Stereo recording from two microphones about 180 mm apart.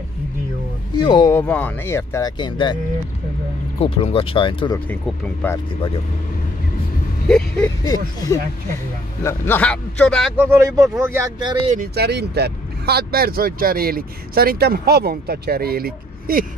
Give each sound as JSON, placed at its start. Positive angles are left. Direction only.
{"t": 1.0, "sound": "speech", "side_deg": 20}
{"t": 1.5, "sound": "speech", "side_deg": 10}
{"t": 3.8, "sound": "speech", "side_deg": 30}
{"t": 4.7, "sound": "speech", "side_deg": 10}
{"t": 7.2, "sound": "a man's voice", "side_deg": 5}
{"t": 7.8, "sound": "a man's voice", "side_deg": 20}
{"t": 10.3, "sound": "speech", "side_deg": -15}
{"t": 11.6, "sound": "speech", "side_deg": -45}
{"t": 11.9, "sound": "speech", "side_deg": -65}